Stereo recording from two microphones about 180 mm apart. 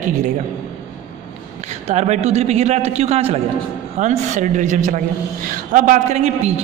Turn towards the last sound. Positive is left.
turn(degrees=-35)  # may be behind; listen again after turning